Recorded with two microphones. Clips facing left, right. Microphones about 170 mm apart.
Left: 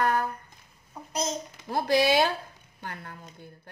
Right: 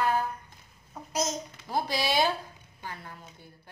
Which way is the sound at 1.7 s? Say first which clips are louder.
Left 6 dB; 60° left (ahead or behind).